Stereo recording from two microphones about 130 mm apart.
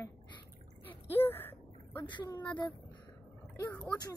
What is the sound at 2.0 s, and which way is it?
Speech, 35° left (ahead or behind).